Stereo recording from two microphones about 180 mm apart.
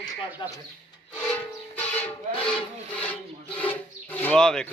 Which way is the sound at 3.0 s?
10° left (ahead or behind).